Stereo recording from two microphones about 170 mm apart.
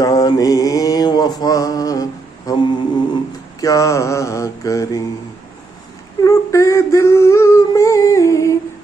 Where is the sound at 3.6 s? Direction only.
20° left (ahead or behind).